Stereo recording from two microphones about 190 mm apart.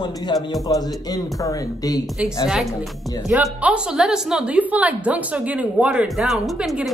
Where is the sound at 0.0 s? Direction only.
20° left (ahead or behind).